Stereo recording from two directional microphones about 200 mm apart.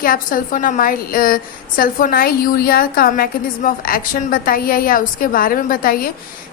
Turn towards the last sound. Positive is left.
turn(degrees=45)  # may be behind; listen again after turning